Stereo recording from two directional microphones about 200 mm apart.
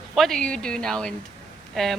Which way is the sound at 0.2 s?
Centre (ahead or behind).